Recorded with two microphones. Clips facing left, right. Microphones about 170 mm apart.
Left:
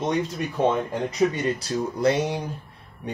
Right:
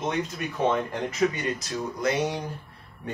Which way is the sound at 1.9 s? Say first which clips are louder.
Left 3 dB; 30° left (ahead or behind).